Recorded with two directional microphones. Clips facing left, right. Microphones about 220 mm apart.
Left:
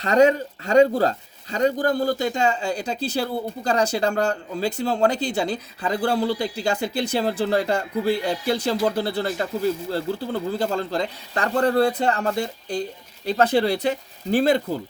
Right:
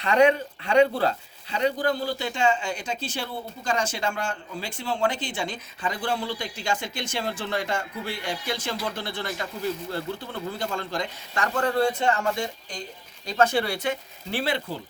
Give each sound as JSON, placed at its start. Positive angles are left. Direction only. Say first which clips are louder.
{"t": 0.0, "sound": "speech", "louder": "left 3 dB", "side_deg": 40}